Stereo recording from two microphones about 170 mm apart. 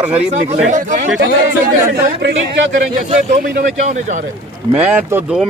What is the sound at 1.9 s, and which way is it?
Speech, 80° right.